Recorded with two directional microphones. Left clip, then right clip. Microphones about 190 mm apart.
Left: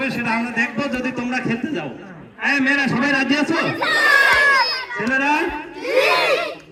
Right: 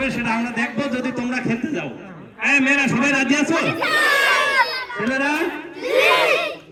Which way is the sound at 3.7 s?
40° right (ahead or behind).